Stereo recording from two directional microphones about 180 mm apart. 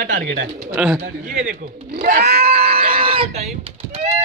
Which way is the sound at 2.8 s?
30° right (ahead or behind).